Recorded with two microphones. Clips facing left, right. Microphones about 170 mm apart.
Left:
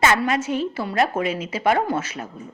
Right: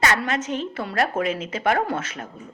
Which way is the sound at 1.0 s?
50° right (ahead or behind).